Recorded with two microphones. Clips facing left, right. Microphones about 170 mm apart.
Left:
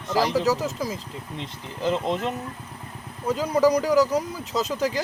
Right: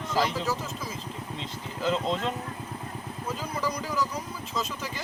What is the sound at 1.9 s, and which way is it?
Speech, 15° left (ahead or behind).